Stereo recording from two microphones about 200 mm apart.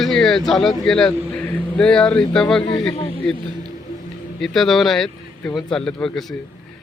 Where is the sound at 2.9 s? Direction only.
30° left (ahead or behind).